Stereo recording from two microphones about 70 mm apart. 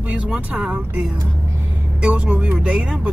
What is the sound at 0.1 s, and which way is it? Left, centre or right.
Speech, centre.